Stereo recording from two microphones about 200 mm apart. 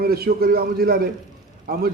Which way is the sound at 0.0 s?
50° right (ahead or behind).